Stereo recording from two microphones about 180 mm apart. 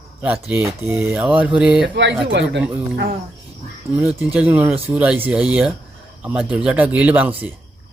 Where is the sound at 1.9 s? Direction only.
80° right.